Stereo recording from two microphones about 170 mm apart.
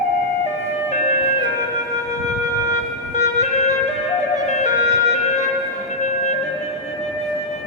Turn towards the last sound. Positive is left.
turn(degrees=45)  # may be behind; listen again after turning